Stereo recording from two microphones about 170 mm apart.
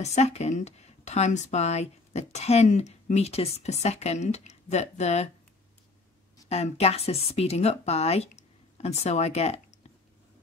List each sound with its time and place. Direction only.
0.0 s speech: 40° left (ahead or behind)
6.5 s speech: 40° left (ahead or behind)